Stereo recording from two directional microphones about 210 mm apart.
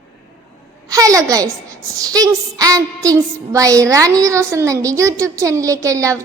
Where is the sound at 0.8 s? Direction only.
15° right (ahead or behind).